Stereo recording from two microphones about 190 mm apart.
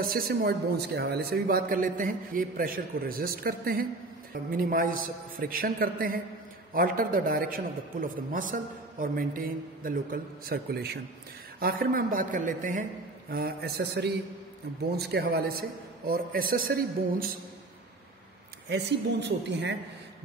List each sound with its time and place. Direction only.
0.0 s speech: 50° right (ahead or behind)
13.3 s speech: 55° right (ahead or behind)
18.7 s speech: 65° right (ahead or behind)